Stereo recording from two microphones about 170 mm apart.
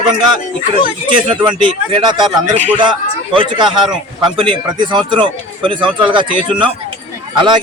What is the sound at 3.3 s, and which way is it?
Speech, 30° right (ahead or behind).